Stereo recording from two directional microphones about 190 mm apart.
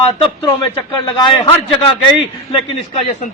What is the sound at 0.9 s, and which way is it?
A man's voice, 25° left (ahead or behind).